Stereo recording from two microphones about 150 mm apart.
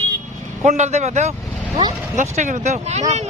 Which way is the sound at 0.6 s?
50° right (ahead or behind).